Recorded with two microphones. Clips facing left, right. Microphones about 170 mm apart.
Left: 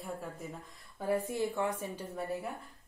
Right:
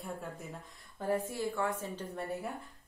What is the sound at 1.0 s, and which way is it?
A woman's voice, 15° left (ahead or behind).